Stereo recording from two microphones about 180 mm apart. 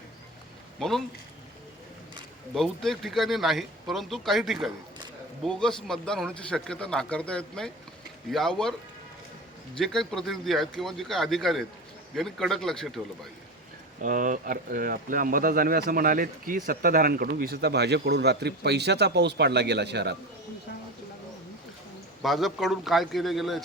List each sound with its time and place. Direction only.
0.8 s a man's voice: centre (ahead or behind)
2.6 s a man's voice: centre (ahead or behind)
9.7 s a man's voice: 5° left (ahead or behind)
14.0 s speech: 45° right (ahead or behind); by 20.1 s 70° right (ahead or behind)
22.2 s a man's voice: centre (ahead or behind)